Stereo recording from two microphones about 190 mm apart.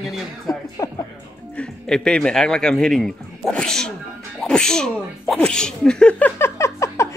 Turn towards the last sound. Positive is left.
turn(degrees=15)  # may be behind; listen again after turning